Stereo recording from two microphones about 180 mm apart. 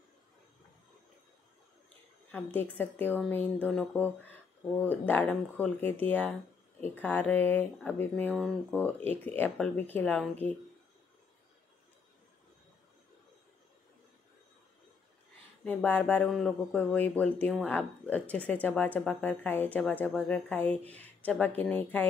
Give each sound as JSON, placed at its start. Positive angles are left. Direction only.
{"t": 2.3, "sound": "speech", "side_deg": 10}
{"t": 15.6, "sound": "speech", "side_deg": 10}